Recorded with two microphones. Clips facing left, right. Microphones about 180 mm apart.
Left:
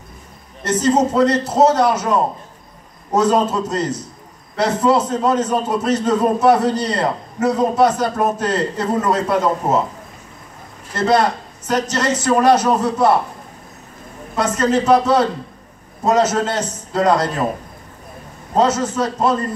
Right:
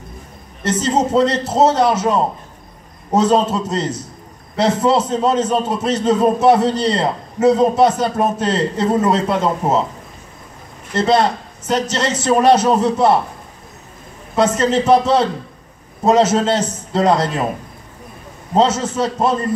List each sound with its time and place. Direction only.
0.7 s a man's voice: 25° right (ahead or behind)
3.2 s a man's voice: 25° right (ahead or behind)
11.0 s a man's voice: 25° right (ahead or behind)
14.3 s a man's voice: 25° right (ahead or behind)
18.8 s a man's voice: 20° right (ahead or behind)